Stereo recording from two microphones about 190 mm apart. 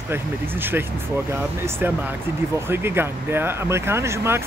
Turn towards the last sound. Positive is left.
turn(degrees=-15)  # may be behind; listen again after turning